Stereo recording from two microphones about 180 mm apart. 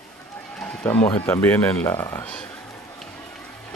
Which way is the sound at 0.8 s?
15° left (ahead or behind).